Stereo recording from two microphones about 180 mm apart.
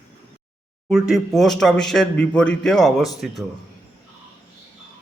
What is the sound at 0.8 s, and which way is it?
Speech, 5° right (ahead or behind).